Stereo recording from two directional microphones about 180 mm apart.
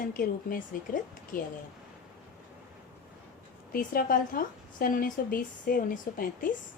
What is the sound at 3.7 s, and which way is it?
Speech, 50° left (ahead or behind).